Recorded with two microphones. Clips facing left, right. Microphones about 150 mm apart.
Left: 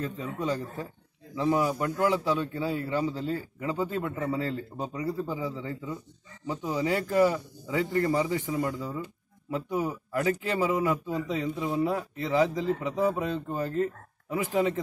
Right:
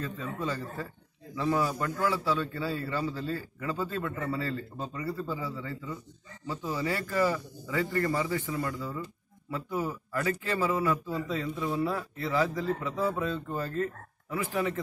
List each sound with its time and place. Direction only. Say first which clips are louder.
0.0 s a man's voice: left 2 dB; 15° left (ahead or behind)